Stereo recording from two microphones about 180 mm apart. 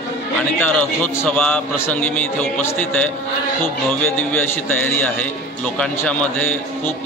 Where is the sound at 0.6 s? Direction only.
10° left (ahead or behind).